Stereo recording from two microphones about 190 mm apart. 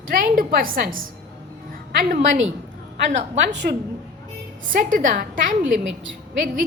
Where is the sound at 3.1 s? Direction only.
40° right (ahead or behind).